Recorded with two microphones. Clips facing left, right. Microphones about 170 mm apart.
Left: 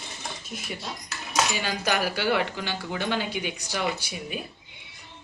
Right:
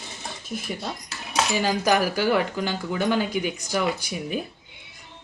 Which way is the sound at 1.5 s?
40° right (ahead or behind).